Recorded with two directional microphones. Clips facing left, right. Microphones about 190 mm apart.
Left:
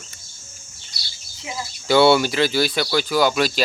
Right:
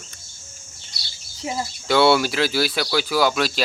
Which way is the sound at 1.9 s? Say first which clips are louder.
Left 2 dB; centre (ahead or behind).